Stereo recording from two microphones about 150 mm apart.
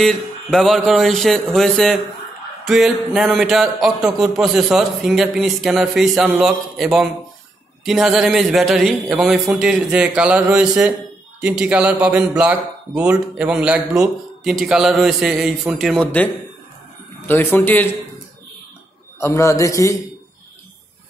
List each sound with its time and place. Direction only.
0.0 s a man's voice: centre (ahead or behind)
17.3 s speech: 15° left (ahead or behind)
19.1 s a man's voice: 20° left (ahead or behind)